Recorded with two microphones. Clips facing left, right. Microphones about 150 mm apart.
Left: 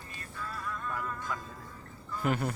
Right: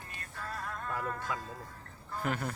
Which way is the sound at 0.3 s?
60° right (ahead or behind).